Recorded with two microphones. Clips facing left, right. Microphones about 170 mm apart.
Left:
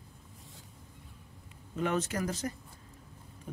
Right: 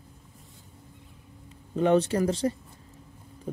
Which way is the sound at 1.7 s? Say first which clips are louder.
Right 9 dB; 30° right (ahead or behind).